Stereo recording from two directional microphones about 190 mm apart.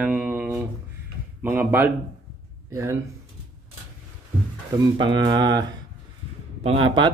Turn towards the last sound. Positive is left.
turn(degrees=-25)  # may be behind; listen again after turning